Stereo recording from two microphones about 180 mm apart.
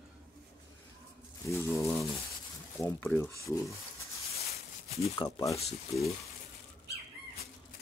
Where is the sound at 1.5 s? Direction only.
15° left (ahead or behind).